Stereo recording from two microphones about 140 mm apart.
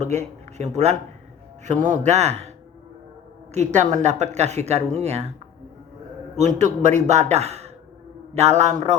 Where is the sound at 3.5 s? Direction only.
55° right (ahead or behind).